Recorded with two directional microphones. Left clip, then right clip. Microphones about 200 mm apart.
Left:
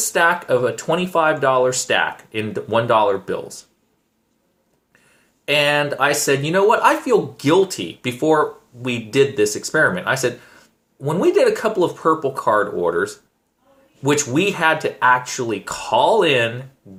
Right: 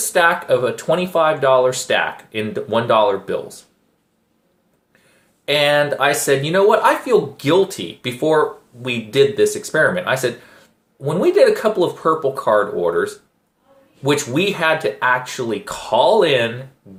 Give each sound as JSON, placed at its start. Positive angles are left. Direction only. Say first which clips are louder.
{"t": 0.1, "sound": "speech", "louder": "right 2 dB", "side_deg": 25}
{"t": 5.5, "sound": "speech", "louder": "right 2 dB", "side_deg": 20}